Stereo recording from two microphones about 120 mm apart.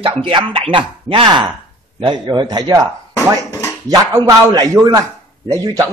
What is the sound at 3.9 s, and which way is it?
A man's voice, 30° right (ahead or behind).